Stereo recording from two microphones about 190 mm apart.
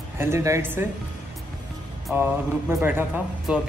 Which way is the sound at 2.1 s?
10° right (ahead or behind).